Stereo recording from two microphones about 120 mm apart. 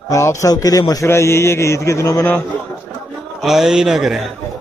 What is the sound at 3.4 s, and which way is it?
Speech, 5° right (ahead or behind).